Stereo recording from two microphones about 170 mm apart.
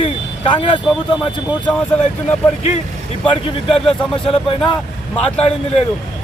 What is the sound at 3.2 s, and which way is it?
A man's voice, 30° left (ahead or behind).